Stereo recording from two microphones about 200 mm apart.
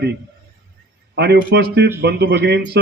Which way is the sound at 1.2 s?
55° right (ahead or behind).